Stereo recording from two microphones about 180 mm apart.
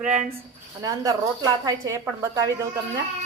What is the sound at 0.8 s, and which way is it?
A woman's voice, 20° right (ahead or behind).